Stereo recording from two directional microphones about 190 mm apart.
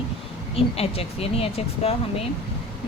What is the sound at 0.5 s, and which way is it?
Speech, 30° left (ahead or behind).